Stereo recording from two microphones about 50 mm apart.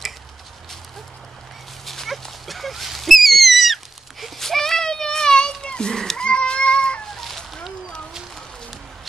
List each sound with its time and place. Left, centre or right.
1.9 s dog: centre
7.2 s chicken: centre